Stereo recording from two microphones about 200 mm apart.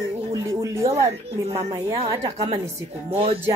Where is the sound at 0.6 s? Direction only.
15° right (ahead or behind).